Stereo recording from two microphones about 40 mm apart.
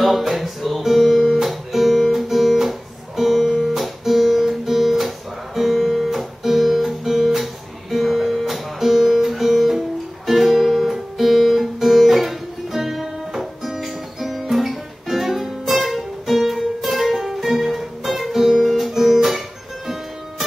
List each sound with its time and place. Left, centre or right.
0.0 s music: centre